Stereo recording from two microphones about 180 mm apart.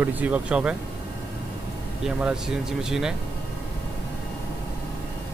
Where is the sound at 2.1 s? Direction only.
5° right (ahead or behind).